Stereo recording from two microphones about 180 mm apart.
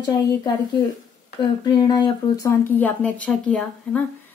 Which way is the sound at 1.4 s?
25° left (ahead or behind).